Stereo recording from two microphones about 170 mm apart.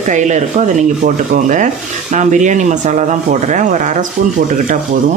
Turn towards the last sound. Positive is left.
turn(degrees=-45)  # may be behind; listen again after turning